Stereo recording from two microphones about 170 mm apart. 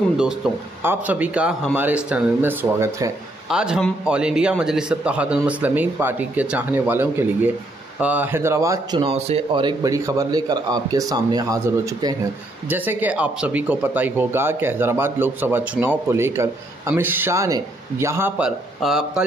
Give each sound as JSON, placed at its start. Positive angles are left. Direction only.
{"t": 0.2, "sound": "speech", "side_deg": -5}
{"t": 3.4, "sound": "a man's voice", "side_deg": -5}
{"t": 18.8, "sound": "speech", "side_deg": 0}